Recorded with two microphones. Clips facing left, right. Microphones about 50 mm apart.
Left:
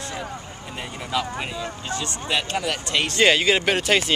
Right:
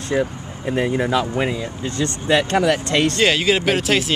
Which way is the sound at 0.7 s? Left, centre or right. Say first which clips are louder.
Right 14 dB; right.